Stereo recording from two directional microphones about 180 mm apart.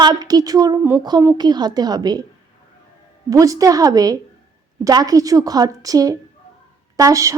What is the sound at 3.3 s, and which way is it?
A woman's voice, 20° right (ahead or behind).